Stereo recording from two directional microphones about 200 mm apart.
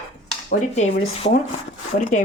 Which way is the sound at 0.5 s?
35° left (ahead or behind).